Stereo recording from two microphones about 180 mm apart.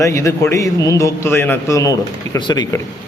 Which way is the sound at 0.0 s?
15° left (ahead or behind).